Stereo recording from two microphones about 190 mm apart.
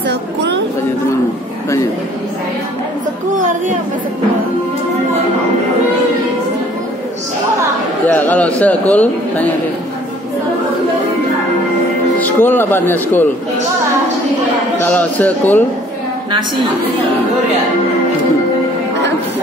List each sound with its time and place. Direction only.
0.1 s a sound: 65° right (ahead or behind)
8.1 s a man's voice: 10° left (ahead or behind)
12.2 s a man's voice: 10° left (ahead or behind)
14.8 s a man's voice: 10° left (ahead or behind)